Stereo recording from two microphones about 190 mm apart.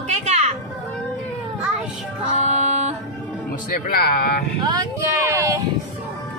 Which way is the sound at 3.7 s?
50° left (ahead or behind).